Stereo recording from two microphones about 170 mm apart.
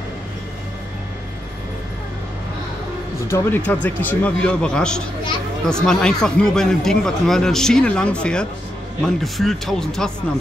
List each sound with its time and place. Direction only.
3.3 s a man's voice: 10° left (ahead or behind)